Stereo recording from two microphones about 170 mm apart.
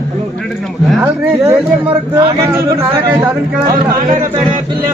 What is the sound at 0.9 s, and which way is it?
Speech, 5° right (ahead or behind).